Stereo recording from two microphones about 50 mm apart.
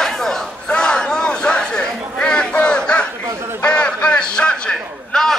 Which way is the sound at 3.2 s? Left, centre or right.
Right.